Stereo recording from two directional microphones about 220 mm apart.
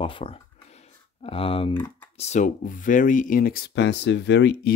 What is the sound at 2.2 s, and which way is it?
Speech, 30° left (ahead or behind).